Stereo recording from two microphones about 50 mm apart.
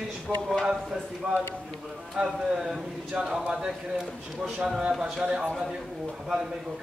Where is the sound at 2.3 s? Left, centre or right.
Centre.